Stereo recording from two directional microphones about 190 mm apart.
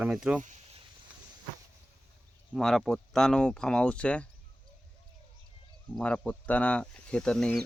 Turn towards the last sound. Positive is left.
turn(degrees=5)  # may be behind; listen again after turning